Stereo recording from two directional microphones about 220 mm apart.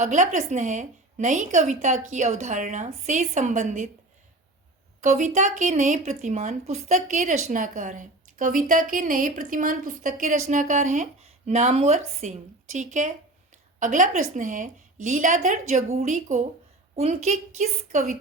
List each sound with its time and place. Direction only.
0.0 s a woman's voice: 35° right (ahead or behind)
4.9 s a woman's voice: 35° right (ahead or behind)